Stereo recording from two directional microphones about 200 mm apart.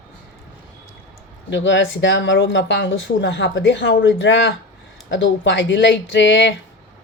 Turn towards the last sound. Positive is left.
turn(degrees=65)  # may be behind; listen again after turning